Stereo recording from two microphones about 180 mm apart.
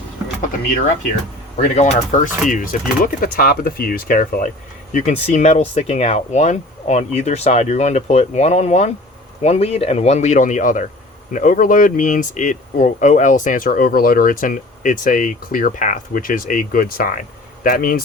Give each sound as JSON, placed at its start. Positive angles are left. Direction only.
{"t": 1.5, "sound": "speech", "side_deg": 40}